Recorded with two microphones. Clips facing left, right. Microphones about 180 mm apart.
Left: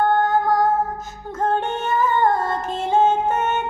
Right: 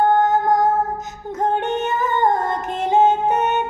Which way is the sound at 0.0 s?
20° right (ahead or behind).